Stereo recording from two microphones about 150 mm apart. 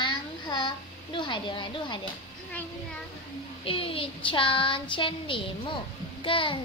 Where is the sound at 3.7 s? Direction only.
35° left (ahead or behind).